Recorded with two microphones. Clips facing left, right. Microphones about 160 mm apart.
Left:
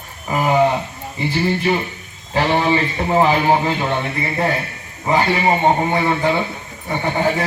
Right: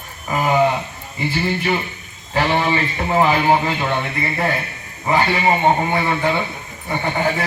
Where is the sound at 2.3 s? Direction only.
20° left (ahead or behind).